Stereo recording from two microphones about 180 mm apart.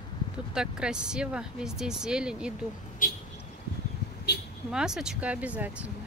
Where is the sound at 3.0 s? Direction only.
50° left (ahead or behind).